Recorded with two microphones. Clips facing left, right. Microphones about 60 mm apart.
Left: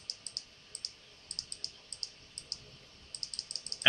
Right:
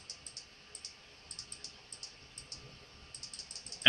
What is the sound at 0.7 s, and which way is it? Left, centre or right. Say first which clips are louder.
Clicking: left 6 dB; left.